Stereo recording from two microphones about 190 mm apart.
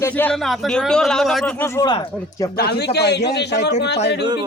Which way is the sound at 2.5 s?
55° left (ahead or behind).